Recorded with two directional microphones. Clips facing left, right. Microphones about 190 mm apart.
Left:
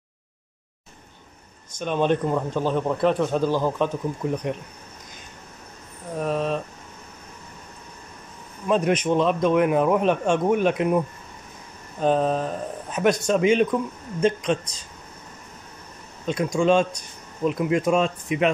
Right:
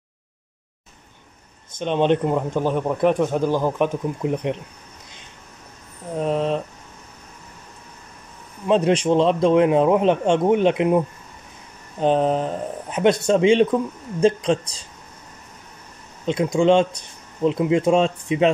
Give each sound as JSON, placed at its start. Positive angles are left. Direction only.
{"t": 1.8, "sound": "speech", "side_deg": -20}
{"t": 6.1, "sound": "a man's voice", "side_deg": -20}
{"t": 8.6, "sound": "a man's voice", "side_deg": -25}
{"t": 16.3, "sound": "a man's voice", "side_deg": -20}